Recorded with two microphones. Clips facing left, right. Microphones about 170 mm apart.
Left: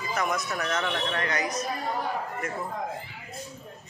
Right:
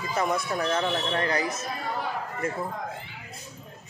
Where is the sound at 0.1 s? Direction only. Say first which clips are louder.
Right 2 dB; 30° right (ahead or behind).